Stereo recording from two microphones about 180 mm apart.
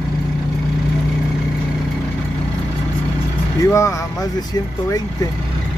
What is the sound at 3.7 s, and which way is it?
Speech, 15° left (ahead or behind).